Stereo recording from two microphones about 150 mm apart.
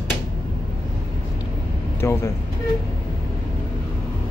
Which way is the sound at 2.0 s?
20° left (ahead or behind).